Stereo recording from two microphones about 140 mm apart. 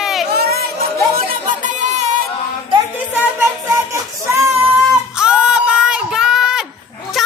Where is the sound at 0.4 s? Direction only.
90° right.